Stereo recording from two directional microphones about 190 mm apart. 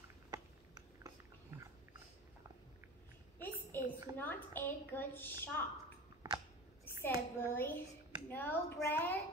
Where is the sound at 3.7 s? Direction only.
10° left (ahead or behind).